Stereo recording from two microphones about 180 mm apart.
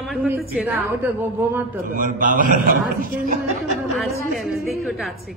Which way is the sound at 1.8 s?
50° right (ahead or behind).